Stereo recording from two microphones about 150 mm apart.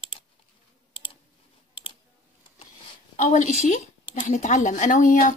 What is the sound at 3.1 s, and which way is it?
A woman's voice, 55° left (ahead or behind).